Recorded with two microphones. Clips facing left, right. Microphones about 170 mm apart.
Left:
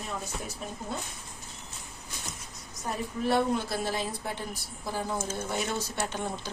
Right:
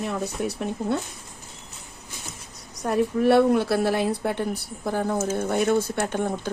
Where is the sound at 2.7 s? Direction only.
70° right (ahead or behind).